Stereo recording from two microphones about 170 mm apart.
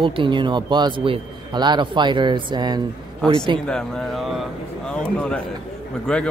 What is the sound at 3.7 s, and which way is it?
Speech, 5° left (ahead or behind).